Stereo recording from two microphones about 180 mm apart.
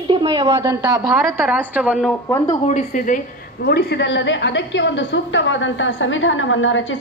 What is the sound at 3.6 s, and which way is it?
A woman's voice, 65° left (ahead or behind).